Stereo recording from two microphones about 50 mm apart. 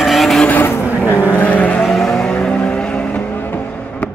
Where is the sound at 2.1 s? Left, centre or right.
Centre.